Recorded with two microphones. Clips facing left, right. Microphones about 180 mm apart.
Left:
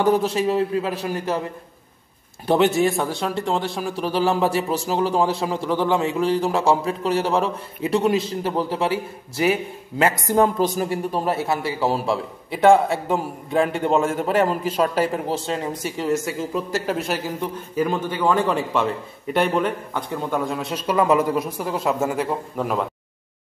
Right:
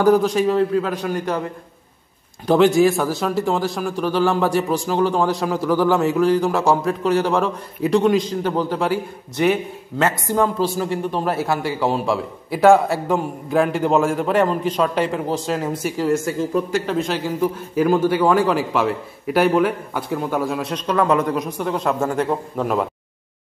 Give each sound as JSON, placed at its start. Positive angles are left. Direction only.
{"t": 0.3, "sound": "a man's voice", "side_deg": 5}
{"t": 2.4, "sound": "a man's voice", "side_deg": 0}
{"t": 3.9, "sound": "speech", "side_deg": 35}
{"t": 4.2, "sound": "a man's voice", "side_deg": 5}
{"t": 11.2, "sound": "a man's voice", "side_deg": 0}
{"t": 17.4, "sound": "a man's voice", "side_deg": -10}